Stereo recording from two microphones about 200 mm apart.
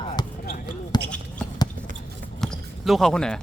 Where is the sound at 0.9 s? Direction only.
20° left (ahead or behind).